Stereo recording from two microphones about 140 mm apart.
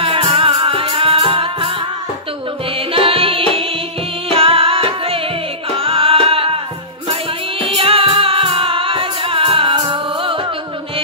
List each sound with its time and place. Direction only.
0.0 s music: 40° right (ahead or behind)
2.9 s music: 40° right (ahead or behind)
7.6 s music: 40° right (ahead or behind)